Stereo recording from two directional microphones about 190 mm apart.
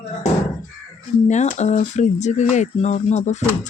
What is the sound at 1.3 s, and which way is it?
Speech, 35° left (ahead or behind).